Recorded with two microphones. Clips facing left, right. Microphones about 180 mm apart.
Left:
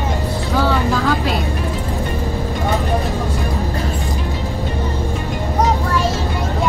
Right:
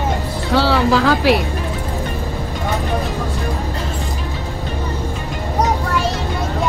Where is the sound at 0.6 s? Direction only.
85° right.